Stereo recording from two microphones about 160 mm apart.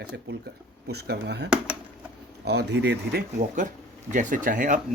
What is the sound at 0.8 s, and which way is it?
Speech, 90° right.